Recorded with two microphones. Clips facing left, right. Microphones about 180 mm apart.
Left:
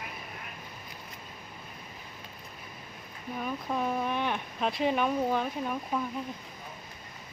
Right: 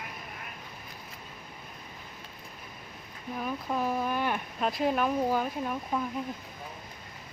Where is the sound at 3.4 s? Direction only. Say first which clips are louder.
Right 1 dB; centre (ahead or behind).